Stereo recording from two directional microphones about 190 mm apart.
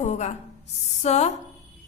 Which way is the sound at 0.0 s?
35° left (ahead or behind).